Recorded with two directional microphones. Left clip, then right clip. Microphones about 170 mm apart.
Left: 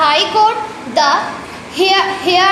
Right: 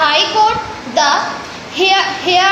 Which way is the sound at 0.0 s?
25° left (ahead or behind).